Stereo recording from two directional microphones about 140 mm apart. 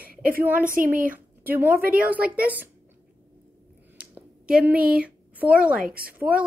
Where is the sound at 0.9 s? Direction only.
75° right (ahead or behind).